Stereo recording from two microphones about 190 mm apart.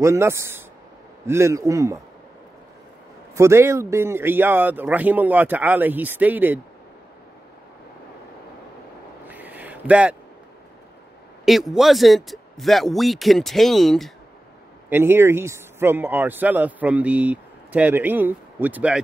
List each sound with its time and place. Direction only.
0.0 s a man's voice: 15° right (ahead or behind)
3.3 s a man's voice: 15° right (ahead or behind)
9.3 s a sound: 10° right (ahead or behind)
11.4 s speech: centre (ahead or behind)
14.9 s a man's voice: 10° right (ahead or behind)